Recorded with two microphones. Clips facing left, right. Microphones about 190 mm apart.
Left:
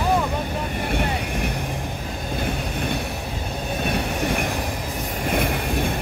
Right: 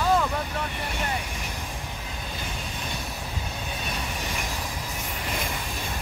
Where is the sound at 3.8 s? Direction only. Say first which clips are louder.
Left 12 dB; 60° left (ahead or behind).